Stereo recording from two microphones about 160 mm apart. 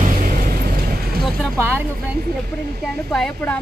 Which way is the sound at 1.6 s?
15° right (ahead or behind).